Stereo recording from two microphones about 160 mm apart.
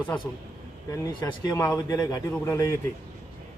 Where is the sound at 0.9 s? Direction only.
25° left (ahead or behind).